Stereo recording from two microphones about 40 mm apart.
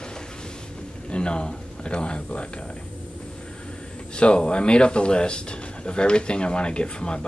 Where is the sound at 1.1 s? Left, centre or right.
Left.